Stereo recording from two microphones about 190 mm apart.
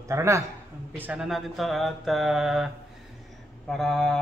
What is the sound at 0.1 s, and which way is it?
Speech, 15° right (ahead or behind).